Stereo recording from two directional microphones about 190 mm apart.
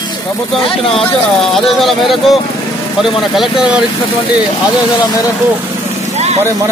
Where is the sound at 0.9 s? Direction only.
Centre (ahead or behind).